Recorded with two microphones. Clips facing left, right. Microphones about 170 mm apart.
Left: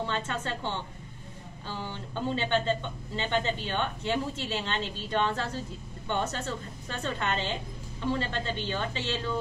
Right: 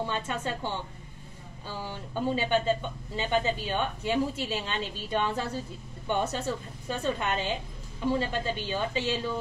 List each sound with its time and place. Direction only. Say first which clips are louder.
0.0 s a woman's voice: right 1 dB; 15° right (ahead or behind)